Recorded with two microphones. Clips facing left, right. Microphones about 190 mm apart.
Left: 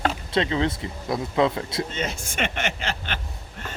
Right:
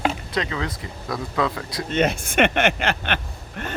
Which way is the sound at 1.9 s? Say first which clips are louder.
Right 9 dB; 60° right (ahead or behind).